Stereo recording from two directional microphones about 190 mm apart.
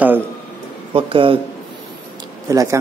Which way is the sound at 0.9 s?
30° right (ahead or behind).